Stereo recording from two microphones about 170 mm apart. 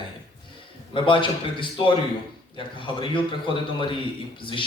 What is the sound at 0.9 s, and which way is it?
A man's voice, 30° left (ahead or behind).